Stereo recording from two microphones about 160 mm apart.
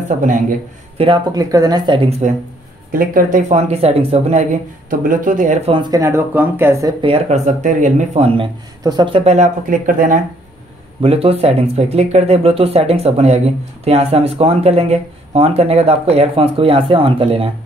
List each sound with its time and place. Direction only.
0.2 s speech: 55° right (ahead or behind)
0.9 s speech: 35° right (ahead or behind)
2.0 s speech: 40° right (ahead or behind)
2.9 s speech: 60° right (ahead or behind)
5.7 s speech: 25° right (ahead or behind)
7.0 s speech: 40° right (ahead or behind)
8.8 s speech: 30° right (ahead or behind); by 10.2 s 55° right (ahead or behind)
11.0 s speech: 35° right (ahead or behind)